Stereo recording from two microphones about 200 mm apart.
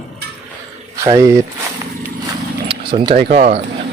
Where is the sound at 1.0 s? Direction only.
15° right (ahead or behind).